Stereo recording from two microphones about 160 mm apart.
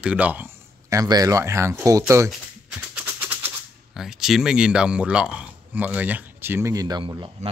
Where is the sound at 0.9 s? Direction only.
25° right (ahead or behind).